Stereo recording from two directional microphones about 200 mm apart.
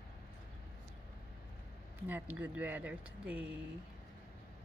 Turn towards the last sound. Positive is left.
turn(degrees=-5)  # may be behind; listen again after turning